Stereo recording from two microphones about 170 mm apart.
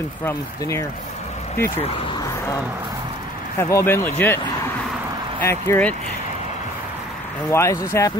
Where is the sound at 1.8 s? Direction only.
35° left (ahead or behind).